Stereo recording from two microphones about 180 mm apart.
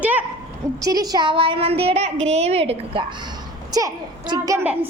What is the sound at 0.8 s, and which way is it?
A woman's voice, 20° right (ahead or behind).